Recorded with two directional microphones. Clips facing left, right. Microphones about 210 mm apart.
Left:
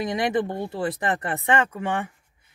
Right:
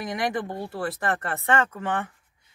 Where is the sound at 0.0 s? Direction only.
20° left (ahead or behind).